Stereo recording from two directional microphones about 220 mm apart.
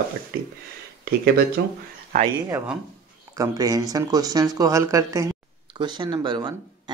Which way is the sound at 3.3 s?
15° right (ahead or behind).